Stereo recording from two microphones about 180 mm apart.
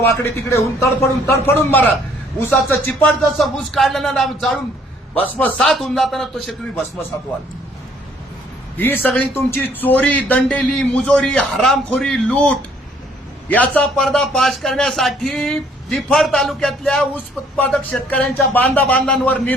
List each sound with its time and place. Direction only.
0.0 s a man's voice: 15° left (ahead or behind)
8.8 s a man's voice: 10° left (ahead or behind)